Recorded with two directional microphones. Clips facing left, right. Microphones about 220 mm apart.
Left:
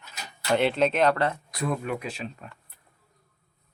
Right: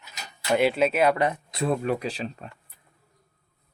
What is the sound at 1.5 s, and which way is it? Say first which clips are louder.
Speech: right 4 dB; 30° right (ahead or behind).